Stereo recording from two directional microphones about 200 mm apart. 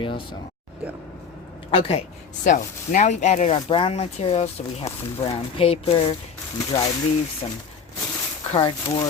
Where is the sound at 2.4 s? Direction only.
40° left (ahead or behind).